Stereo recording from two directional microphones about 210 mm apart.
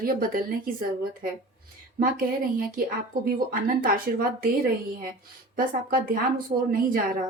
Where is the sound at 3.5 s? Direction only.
40° right (ahead or behind).